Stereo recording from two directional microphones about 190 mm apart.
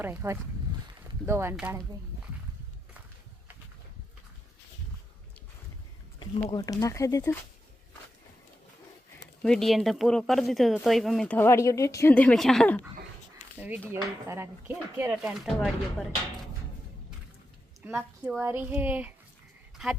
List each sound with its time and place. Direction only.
0.0 s speech: 10° right (ahead or behind)
6.5 s speech: 20° left (ahead or behind)
9.4 s speech: 5° left (ahead or behind)
13.6 s speech: 10° right (ahead or behind)
17.8 s speech: 10° right (ahead or behind)